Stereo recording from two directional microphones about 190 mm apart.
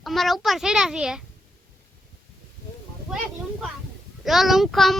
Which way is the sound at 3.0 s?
Centre (ahead or behind).